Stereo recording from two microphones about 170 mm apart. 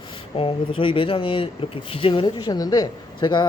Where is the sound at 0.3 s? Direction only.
30° left (ahead or behind).